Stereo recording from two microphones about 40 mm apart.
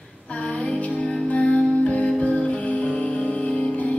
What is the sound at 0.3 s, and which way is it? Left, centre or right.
Female singing, left.